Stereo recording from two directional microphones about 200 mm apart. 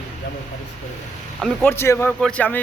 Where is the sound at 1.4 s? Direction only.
5° left (ahead or behind).